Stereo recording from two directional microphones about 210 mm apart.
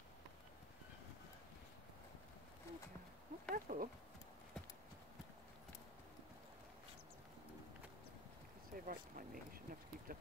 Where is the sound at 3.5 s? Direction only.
40° right (ahead or behind).